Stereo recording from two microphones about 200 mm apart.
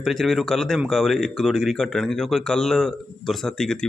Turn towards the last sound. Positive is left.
turn(degrees=5)  # may be behind; listen again after turning